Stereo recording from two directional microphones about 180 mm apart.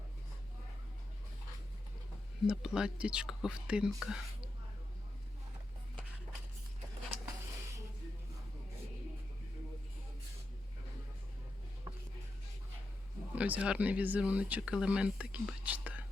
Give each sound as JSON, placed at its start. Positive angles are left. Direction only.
{"t": 2.5, "sound": "speech", "side_deg": -5}
{"t": 11.9, "sound": "music", "side_deg": -25}
{"t": 13.3, "sound": "speech", "side_deg": -10}